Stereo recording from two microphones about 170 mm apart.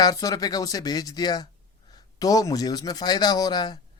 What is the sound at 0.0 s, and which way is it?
Speech, 20° left (ahead or behind).